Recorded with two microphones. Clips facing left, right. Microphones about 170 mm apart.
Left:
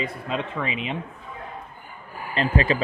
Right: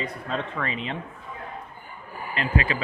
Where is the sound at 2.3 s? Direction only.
30° left (ahead or behind).